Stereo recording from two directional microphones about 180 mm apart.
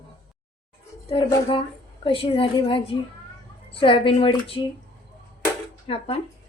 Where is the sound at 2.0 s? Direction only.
30° left (ahead or behind).